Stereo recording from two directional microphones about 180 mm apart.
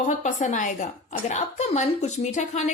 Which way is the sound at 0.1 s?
40° left (ahead or behind).